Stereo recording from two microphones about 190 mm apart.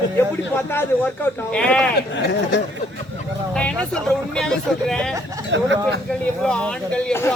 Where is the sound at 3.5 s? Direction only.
5° left (ahead or behind).